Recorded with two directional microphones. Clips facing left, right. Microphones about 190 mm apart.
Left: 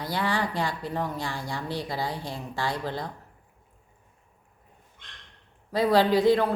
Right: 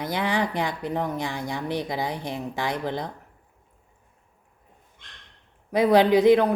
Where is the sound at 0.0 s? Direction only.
20° right (ahead or behind).